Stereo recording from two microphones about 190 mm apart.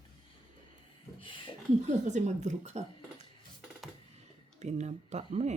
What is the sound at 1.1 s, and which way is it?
Speech, 25° left (ahead or behind).